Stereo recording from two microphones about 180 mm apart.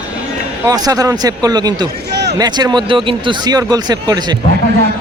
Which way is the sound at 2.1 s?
70° right (ahead or behind).